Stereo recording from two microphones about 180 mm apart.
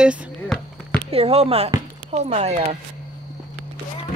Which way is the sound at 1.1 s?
35° right (ahead or behind).